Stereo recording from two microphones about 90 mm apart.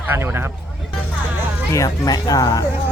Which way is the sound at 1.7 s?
40° left (ahead or behind).